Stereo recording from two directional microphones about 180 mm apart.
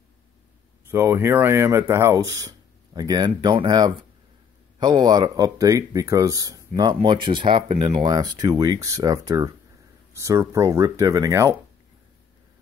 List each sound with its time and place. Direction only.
0.8 s speech: 15° right (ahead or behind)